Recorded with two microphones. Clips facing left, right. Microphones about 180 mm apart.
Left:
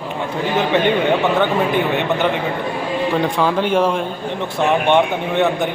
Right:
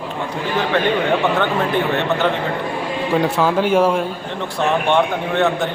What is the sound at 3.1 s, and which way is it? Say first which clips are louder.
Speech: right 3 dB; 5° right (ahead or behind).